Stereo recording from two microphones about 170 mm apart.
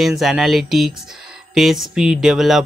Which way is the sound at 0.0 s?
Centre (ahead or behind).